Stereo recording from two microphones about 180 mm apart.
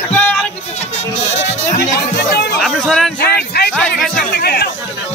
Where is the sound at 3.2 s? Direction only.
60° left (ahead or behind).